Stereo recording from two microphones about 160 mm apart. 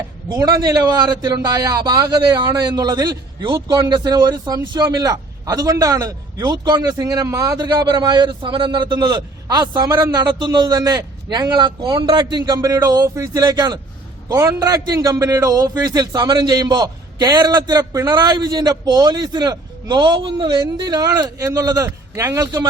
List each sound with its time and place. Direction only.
0.3 s a man's voice: 25° right (ahead or behind)